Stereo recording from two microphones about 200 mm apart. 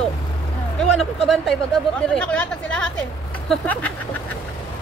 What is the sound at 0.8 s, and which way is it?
Speech, centre (ahead or behind).